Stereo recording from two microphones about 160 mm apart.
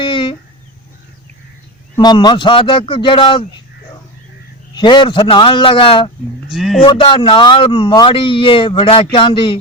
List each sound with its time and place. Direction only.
0.0 s a sound: 30° left (ahead or behind)
2.0 s speech: 25° left (ahead or behind)
4.7 s speech: 30° left (ahead or behind)
6.5 s speech: centre (ahead or behind)
6.8 s speech: 30° left (ahead or behind)